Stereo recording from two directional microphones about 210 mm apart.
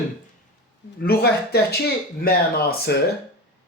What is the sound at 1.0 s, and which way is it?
Speech, 50° left (ahead or behind).